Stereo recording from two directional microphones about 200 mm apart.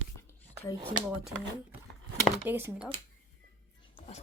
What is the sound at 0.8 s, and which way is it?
Speech, 25° right (ahead or behind).